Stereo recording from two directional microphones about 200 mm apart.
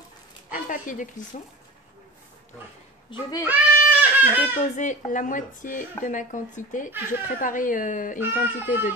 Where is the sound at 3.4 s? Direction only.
10° right (ahead or behind).